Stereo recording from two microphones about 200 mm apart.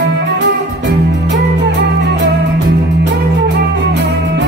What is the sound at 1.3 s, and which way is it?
Music, 60° right (ahead or behind).